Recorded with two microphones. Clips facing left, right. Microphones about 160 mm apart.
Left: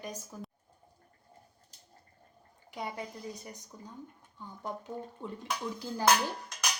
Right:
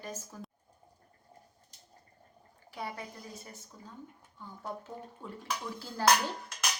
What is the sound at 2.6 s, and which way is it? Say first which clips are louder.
A woman's voice: left 2 dB; 20° left (ahead or behind).